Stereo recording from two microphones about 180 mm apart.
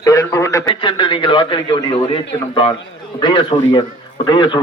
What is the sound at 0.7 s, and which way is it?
A man's voice, 30° left (ahead or behind).